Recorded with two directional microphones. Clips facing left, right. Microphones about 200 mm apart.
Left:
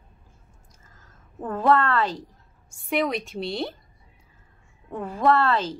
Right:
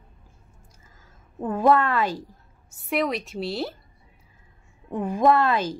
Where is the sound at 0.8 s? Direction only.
10° right (ahead or behind).